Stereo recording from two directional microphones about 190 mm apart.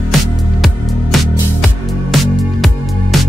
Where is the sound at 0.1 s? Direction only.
Centre (ahead or behind).